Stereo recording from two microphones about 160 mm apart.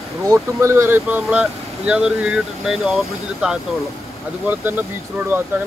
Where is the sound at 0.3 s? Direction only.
20° right (ahead or behind).